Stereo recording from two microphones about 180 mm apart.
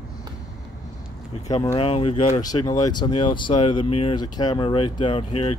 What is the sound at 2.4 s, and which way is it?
Speech, 20° left (ahead or behind).